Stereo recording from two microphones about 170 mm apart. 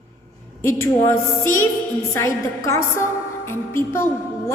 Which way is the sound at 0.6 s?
15° left (ahead or behind).